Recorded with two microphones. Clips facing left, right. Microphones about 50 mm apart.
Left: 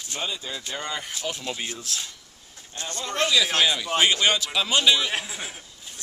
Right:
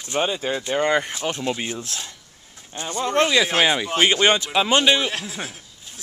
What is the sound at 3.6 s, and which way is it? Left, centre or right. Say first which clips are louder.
A man's voice: right 3 dB; right.